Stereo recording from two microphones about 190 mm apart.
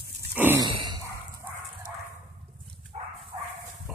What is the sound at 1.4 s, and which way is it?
Dog, 10° right (ahead or behind).